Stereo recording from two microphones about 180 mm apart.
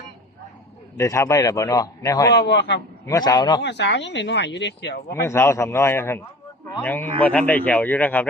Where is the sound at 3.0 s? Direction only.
20° left (ahead or behind).